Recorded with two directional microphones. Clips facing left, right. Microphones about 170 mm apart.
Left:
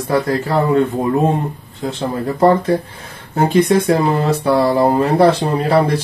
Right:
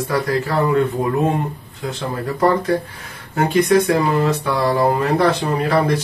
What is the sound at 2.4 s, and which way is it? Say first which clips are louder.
Speech: left 4 dB; 30° left (ahead or behind).